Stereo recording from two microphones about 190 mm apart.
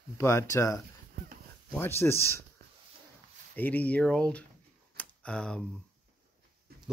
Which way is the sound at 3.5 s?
10° left (ahead or behind).